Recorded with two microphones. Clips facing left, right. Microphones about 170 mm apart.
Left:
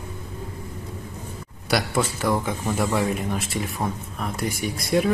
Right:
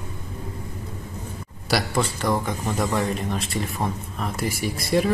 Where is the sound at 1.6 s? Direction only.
Centre (ahead or behind).